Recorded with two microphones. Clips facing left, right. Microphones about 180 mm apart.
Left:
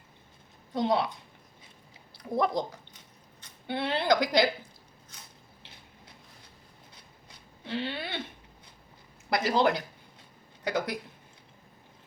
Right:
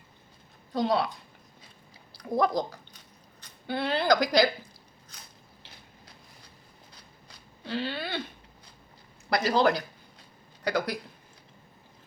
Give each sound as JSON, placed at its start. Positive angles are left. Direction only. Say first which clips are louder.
{"t": 0.7, "sound": "a woman's voice", "louder": "right 1 dB", "side_deg": 20}
{"t": 2.1, "sound": "a woman's voice", "louder": "right 2 dB", "side_deg": 25}
{"t": 6.9, "sound": "a sound", "louder": "right 1 dB", "side_deg": 20}
{"t": 9.3, "sound": "a woman's voice", "louder": "right 1 dB", "side_deg": 25}